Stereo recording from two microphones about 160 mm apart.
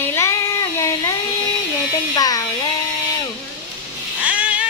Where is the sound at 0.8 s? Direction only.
20° left (ahead or behind).